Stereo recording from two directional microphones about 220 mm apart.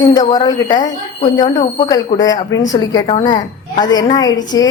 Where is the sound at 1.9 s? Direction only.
15° left (ahead or behind).